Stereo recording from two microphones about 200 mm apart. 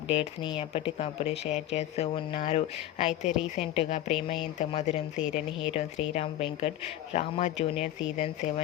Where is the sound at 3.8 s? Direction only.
35° left (ahead or behind).